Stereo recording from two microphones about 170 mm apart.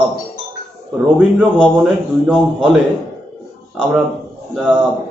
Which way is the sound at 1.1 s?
5° right (ahead or behind).